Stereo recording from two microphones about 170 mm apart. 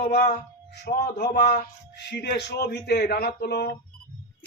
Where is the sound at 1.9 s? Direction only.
80° left.